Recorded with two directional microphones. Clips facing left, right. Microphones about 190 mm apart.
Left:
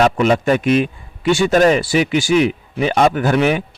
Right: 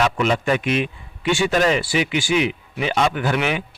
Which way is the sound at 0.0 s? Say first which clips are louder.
Left 5 dB; 45° left (ahead or behind).